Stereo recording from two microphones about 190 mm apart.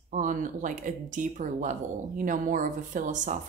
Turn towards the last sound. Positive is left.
turn(degrees=-40)  # may be behind; listen again after turning